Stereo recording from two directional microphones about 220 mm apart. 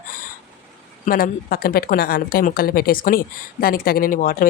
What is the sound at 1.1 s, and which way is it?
A woman's voice, 40° left (ahead or behind).